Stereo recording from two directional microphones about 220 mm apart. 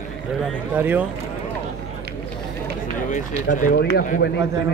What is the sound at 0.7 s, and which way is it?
Speech, 10° right (ahead or behind).